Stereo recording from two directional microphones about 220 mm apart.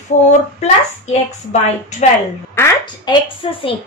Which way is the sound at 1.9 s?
35° left (ahead or behind).